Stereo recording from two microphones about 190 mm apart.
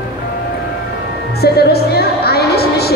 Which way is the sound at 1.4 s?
55° left (ahead or behind).